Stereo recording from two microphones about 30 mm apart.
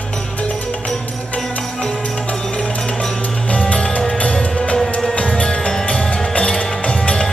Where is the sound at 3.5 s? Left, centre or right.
Left.